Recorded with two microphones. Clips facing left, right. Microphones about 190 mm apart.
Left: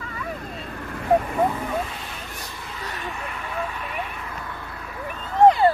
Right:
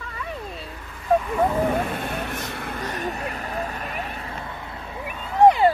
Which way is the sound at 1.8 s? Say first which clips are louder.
Right 5 dB; 55° right (ahead or behind).